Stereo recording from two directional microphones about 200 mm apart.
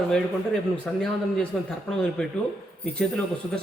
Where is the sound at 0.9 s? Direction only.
Centre (ahead or behind).